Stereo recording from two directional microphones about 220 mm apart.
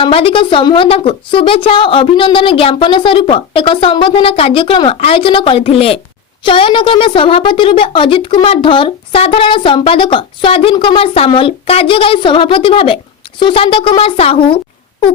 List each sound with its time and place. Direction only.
0.0 s a woman's voice: 25° left (ahead or behind)